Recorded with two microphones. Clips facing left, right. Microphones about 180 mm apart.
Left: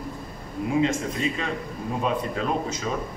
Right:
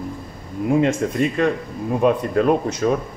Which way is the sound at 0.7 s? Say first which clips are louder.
Right 5 dB; 55° right (ahead or behind).